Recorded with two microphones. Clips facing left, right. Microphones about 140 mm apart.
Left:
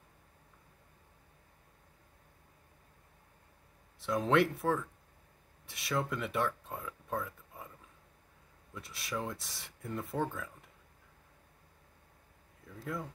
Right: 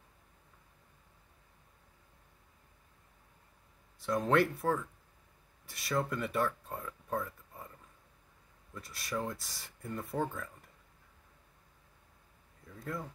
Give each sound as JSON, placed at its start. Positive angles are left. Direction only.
{"t": 4.0, "sound": "speech", "side_deg": 0}
{"t": 8.7, "sound": "speech", "side_deg": 0}
{"t": 12.6, "sound": "speech", "side_deg": 0}